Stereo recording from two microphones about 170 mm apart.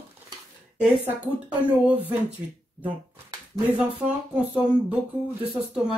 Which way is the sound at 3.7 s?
10° right (ahead or behind).